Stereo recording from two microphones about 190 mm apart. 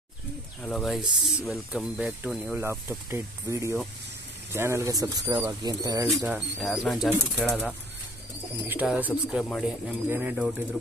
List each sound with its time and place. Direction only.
0.6 s speech: 5° left (ahead or behind); by 6.0 s 20° right (ahead or behind)
6.1 s speech: 10° right (ahead or behind)